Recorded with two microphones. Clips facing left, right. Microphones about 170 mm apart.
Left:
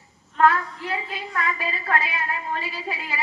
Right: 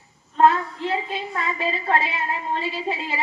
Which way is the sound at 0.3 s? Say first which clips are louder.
Right 2 dB; 25° right (ahead or behind).